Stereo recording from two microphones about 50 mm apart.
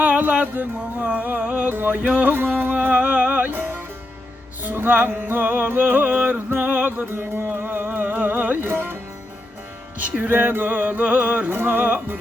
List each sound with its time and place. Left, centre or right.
0.0 s a sound: right
0.8 s music: right
3.5 s music: right
8.7 s speech: right
10.0 s music: right